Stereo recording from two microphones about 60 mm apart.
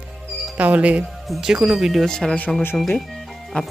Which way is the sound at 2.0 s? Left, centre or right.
Centre.